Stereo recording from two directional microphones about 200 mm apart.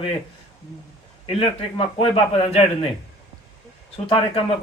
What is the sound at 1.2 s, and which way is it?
A man's voice, 30° left (ahead or behind).